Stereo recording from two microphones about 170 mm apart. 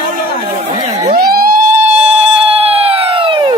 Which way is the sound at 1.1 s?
60° right (ahead or behind).